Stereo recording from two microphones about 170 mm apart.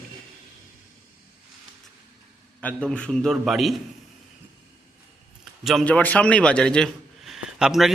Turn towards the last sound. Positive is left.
turn(degrees=0)  # may be behind; listen again after turning